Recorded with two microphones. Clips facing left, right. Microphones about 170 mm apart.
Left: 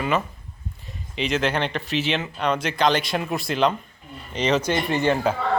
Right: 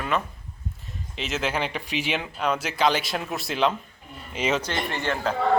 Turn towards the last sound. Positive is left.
turn(degrees=15)  # may be behind; listen again after turning